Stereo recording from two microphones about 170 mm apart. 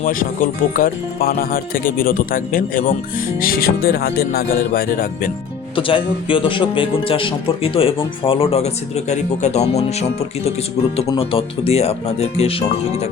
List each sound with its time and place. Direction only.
0.0 s speech: 55° left (ahead or behind)
5.7 s a man's voice: 30° left (ahead or behind)